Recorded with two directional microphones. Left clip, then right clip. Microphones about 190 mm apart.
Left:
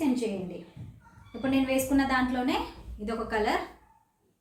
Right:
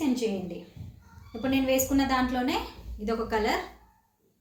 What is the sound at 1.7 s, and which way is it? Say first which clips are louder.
A woman's voice: right 2 dB; 10° left (ahead or behind).